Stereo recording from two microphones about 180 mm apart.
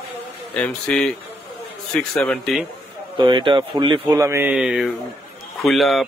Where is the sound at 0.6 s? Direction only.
5° left (ahead or behind).